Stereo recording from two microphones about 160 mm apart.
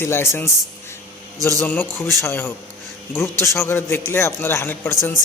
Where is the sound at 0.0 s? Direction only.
15° left (ahead or behind).